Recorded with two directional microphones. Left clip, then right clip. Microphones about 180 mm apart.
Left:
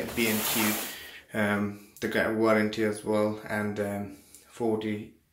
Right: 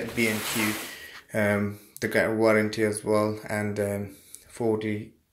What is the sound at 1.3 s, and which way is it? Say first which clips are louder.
Speech: right 3 dB; 30° right (ahead or behind).